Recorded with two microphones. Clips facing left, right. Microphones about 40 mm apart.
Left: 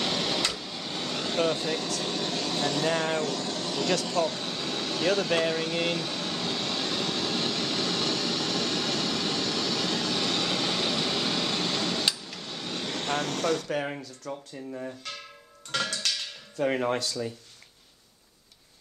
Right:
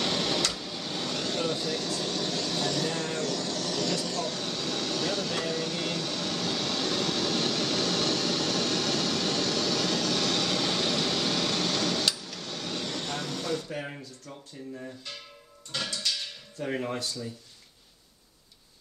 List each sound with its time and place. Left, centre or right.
0.0 s air conditioning: centre
1.4 s speech: left
2.0 s vehicle: left
13.3 s speech: left
13.8 s speech: left
16.6 s speech: left
16.9 s speech: left